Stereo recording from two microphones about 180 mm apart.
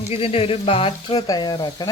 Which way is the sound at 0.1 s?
35° left (ahead or behind).